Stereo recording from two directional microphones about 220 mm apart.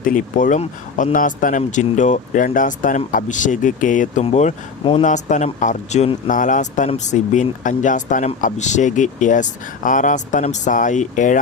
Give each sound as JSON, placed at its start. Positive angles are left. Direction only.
{"t": 0.0, "sound": "speech", "side_deg": 35}